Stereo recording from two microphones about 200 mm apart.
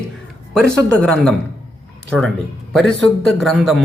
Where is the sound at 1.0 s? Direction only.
5° left (ahead or behind).